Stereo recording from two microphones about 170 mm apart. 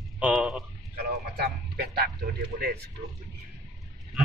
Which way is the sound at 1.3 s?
70° right (ahead or behind).